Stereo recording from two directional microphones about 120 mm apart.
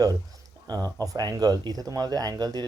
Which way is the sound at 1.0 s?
30° right (ahead or behind).